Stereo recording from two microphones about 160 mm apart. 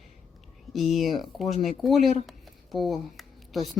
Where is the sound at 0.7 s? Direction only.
Centre (ahead or behind).